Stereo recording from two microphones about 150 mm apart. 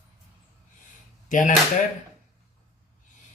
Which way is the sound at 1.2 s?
55° left (ahead or behind).